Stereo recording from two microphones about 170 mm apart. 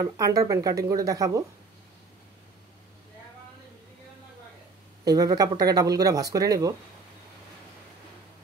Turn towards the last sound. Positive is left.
turn(degrees=-20)  # may be behind; listen again after turning